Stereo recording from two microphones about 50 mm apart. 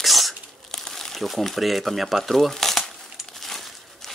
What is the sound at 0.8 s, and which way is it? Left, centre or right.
Speech, centre.